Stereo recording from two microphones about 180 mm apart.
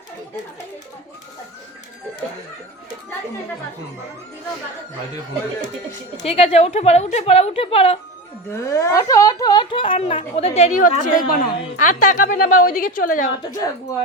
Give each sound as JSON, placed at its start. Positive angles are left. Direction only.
{"t": 6.2, "sound": "a woman's voice", "side_deg": 35}
{"t": 8.6, "sound": "a woman's voice", "side_deg": 15}